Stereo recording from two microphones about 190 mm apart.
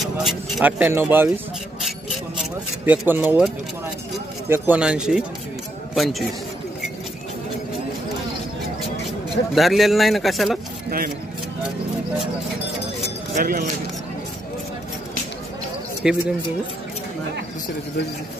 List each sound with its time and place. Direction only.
0.0 s speech: centre (ahead or behind)
1.8 s a sound: centre (ahead or behind)
2.8 s a man's voice: 10° right (ahead or behind)
9.6 s a man's voice: centre (ahead or behind)
13.4 s speech: 50° right (ahead or behind)
16.0 s a man's voice: 5° right (ahead or behind)